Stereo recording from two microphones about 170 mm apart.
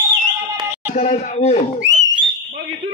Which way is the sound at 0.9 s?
40° left (ahead or behind).